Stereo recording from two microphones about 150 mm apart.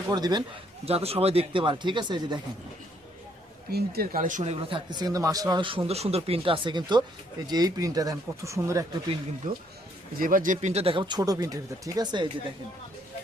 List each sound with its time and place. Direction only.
0.1 s speech: 25° right (ahead or behind)
0.9 s speech: 40° right (ahead or behind)
3.7 s speech: 90° right; by 4.8 s 45° right (ahead or behind)
4.9 s speech: 25° right (ahead or behind)
9.5 s speech: 65° right (ahead or behind); by 12.3 s 30° right (ahead or behind)